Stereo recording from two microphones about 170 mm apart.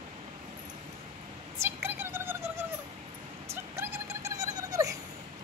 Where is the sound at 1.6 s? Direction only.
10° right (ahead or behind).